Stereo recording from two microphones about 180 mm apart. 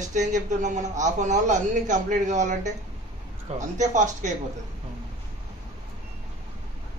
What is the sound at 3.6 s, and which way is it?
Speech, 45° right (ahead or behind).